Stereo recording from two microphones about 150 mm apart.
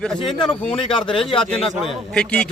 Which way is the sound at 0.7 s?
35° left (ahead or behind).